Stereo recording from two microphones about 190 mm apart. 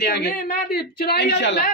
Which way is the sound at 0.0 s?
60° left (ahead or behind).